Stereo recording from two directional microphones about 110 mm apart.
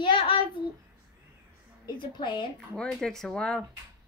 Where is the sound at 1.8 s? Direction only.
45° left (ahead or behind).